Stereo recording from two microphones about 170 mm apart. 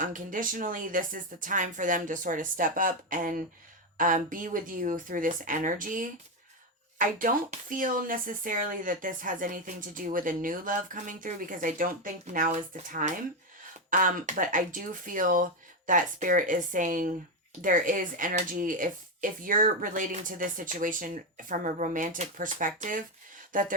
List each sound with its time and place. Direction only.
0.0 s speech: 50° right (ahead or behind)